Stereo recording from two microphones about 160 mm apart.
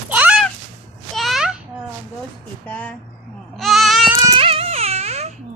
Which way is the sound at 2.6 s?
10° left (ahead or behind).